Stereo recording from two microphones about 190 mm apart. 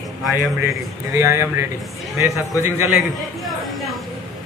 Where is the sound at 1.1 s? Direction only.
15° right (ahead or behind).